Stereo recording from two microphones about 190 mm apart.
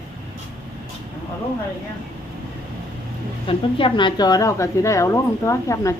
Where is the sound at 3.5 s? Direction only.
25° left (ahead or behind).